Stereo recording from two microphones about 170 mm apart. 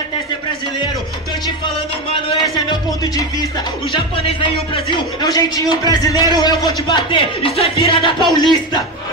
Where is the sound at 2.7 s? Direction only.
20° left (ahead or behind).